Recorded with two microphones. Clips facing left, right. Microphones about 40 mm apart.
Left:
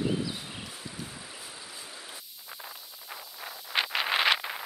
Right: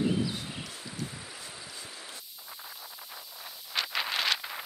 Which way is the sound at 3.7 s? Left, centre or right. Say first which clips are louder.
Left 4 dB; left.